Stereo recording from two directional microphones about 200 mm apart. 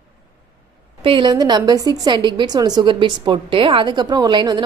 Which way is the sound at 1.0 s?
25° right (ahead or behind).